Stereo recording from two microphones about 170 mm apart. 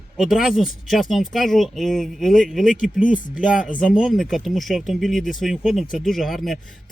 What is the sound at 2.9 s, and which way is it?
Speech, 50° left (ahead or behind).